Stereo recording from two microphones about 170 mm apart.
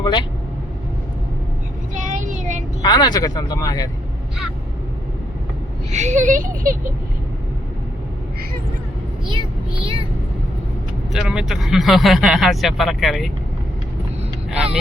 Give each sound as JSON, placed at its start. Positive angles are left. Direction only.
{"t": 0.0, "sound": "speech", "side_deg": 25}
{"t": 1.9, "sound": "vehicle", "side_deg": -45}
{"t": 2.8, "sound": "speech", "side_deg": 25}
{"t": 5.9, "sound": "speech", "side_deg": -45}
{"t": 11.1, "sound": "speech", "side_deg": -5}
{"t": 14.5, "sound": "vehicle", "side_deg": -5}